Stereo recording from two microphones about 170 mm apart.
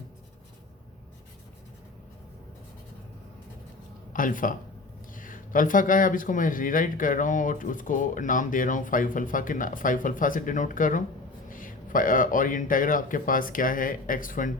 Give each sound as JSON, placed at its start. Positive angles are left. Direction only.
{"t": 4.1, "sound": "speech", "side_deg": 50}